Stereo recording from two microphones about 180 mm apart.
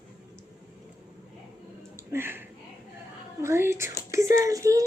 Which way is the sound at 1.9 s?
15° right (ahead or behind).